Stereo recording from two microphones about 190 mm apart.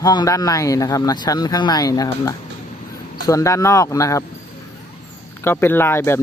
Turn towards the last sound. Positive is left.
turn(degrees=15)  # may be behind; listen again after turning